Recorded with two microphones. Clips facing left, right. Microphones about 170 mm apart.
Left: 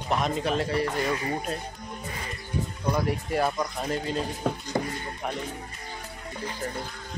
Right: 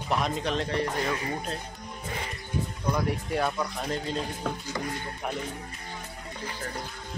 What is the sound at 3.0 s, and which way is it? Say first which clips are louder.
Speech: left 2 dB; centre (ahead or behind).